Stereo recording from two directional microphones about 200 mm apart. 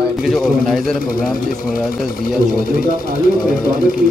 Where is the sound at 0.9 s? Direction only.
45° left (ahead or behind).